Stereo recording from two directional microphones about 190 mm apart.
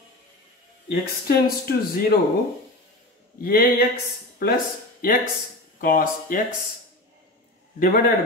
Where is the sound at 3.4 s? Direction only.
50° left (ahead or behind).